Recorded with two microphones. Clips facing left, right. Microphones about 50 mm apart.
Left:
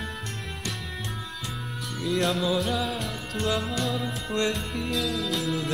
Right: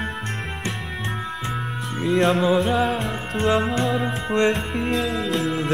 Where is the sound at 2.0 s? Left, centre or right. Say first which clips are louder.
Right 7 dB; right.